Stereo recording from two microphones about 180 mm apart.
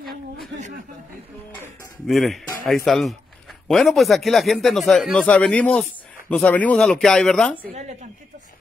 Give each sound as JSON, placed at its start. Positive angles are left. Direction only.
{"t": 2.0, "sound": "speech", "side_deg": 0}
{"t": 7.7, "sound": "a woman's voice", "side_deg": -40}